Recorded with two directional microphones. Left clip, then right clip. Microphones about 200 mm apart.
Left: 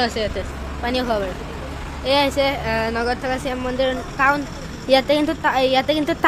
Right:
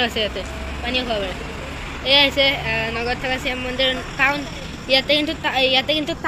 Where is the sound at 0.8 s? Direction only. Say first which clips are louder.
Left 1 dB; 20° left (ahead or behind).